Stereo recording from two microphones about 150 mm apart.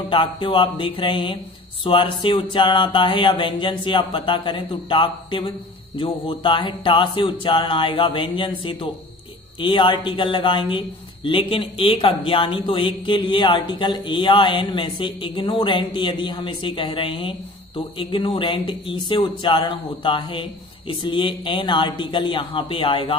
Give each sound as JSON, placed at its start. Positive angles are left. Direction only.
{"t": 0.1, "sound": "a man's voice", "side_deg": 35}